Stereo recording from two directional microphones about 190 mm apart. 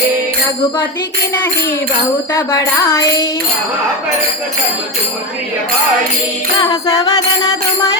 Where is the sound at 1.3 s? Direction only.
10° left (ahead or behind).